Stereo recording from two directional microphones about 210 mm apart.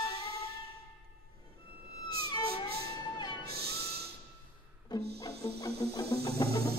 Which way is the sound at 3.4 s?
50° right (ahead or behind).